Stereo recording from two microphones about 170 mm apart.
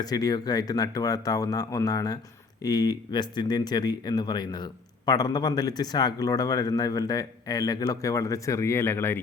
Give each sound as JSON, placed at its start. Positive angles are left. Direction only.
{"t": 0.0, "sound": "speech", "side_deg": 20}